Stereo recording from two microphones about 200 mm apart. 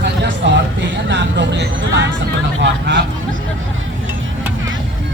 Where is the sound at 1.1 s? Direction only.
65° right (ahead or behind).